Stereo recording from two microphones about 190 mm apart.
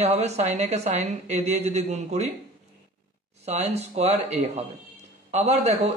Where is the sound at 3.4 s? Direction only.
35° right (ahead or behind).